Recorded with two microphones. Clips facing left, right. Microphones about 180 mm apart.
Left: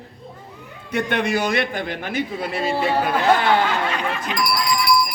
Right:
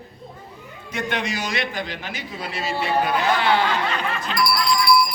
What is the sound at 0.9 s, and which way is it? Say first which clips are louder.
A man's voice: left 5 dB; 55° left (ahead or behind).